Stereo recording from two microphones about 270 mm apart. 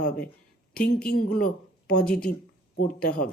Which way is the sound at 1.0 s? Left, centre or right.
Left.